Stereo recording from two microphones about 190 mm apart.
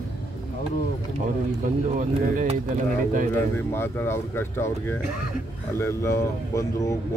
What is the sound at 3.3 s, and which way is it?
Speech, 10° left (ahead or behind).